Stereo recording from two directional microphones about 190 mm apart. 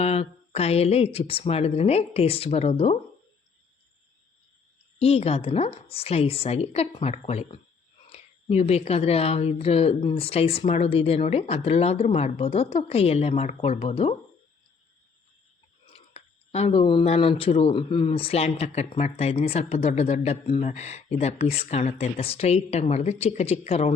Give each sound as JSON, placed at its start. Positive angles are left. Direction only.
{"t": 0.0, "sound": "speech", "side_deg": 35}
{"t": 4.9, "sound": "speech", "side_deg": 30}
{"t": 15.9, "sound": "speech", "side_deg": 35}